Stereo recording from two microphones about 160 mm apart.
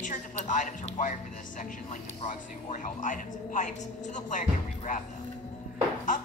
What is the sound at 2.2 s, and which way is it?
A woman's voice, 50° left (ahead or behind).